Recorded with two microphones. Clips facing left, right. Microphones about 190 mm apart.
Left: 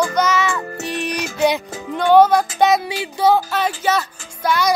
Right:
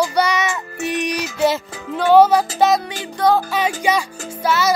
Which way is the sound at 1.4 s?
5° right (ahead or behind).